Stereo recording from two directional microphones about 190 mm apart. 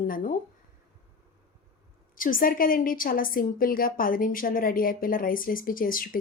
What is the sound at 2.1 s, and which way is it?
A woman's voice, 45° left (ahead or behind).